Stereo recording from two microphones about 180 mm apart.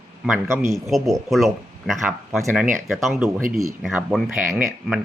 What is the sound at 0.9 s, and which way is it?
Speech, centre (ahead or behind).